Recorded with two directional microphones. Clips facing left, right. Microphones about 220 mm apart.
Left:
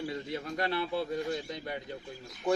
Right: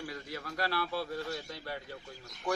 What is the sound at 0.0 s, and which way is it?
A man's voice, 25° left (ahead or behind).